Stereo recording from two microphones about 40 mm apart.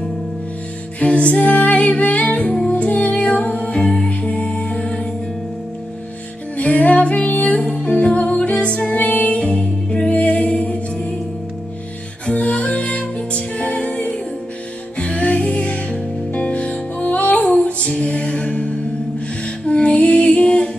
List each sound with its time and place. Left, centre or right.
0.9 s music: left
3.8 s music: centre
4.2 s music: left
6.5 s music: left
7.8 s music: left
12.4 s music: left